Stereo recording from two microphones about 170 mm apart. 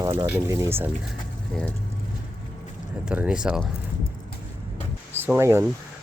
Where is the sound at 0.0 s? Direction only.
20° right (ahead or behind).